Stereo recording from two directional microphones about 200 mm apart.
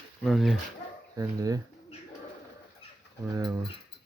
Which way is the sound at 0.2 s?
Centre (ahead or behind).